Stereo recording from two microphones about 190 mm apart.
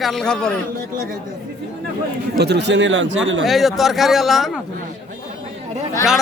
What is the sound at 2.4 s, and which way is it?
A man's voice, 60° right (ahead or behind).